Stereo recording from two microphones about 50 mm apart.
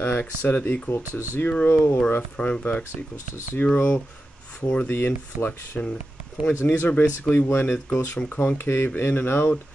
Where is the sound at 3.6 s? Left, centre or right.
Left.